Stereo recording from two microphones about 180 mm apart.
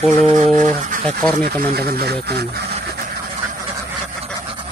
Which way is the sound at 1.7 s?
60° right (ahead or behind).